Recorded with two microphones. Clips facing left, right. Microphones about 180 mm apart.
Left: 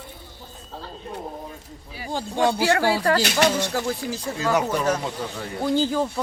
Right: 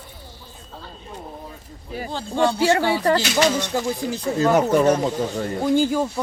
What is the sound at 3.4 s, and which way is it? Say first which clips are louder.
Speech: even; 60° left (ahead or behind).